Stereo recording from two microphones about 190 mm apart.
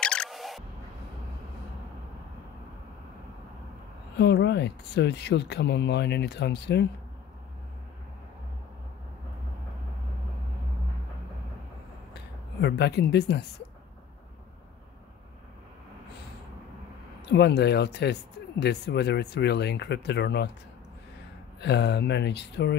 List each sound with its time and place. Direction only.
0.0 s single-lens reflex camera: 5° left (ahead or behind)
4.2 s speech: 65° left (ahead or behind)
12.1 s speech: 60° left (ahead or behind)
17.2 s speech: 65° left (ahead or behind)
21.5 s speech: 65° left (ahead or behind)